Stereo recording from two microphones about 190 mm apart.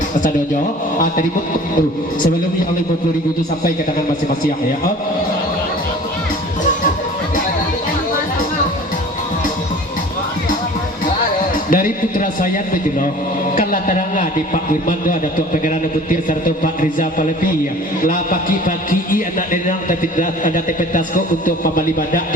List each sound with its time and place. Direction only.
0.9 s speech: 45° left (ahead or behind)
11.7 s a man's voice: 45° left (ahead or behind)
16.8 s a man's voice: 45° left (ahead or behind)